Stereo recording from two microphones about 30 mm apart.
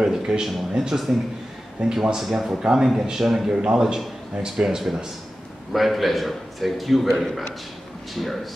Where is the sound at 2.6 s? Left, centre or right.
Right.